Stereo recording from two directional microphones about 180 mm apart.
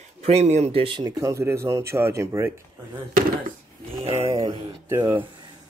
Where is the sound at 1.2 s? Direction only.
15° right (ahead or behind).